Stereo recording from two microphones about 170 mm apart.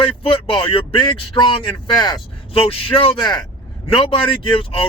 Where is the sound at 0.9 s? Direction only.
30° left (ahead or behind).